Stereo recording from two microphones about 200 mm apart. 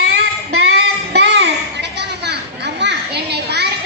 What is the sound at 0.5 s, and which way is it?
Music, 55° right (ahead or behind).